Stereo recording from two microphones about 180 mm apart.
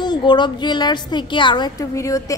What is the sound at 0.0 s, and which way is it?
A woman's voice, 25° left (ahead or behind).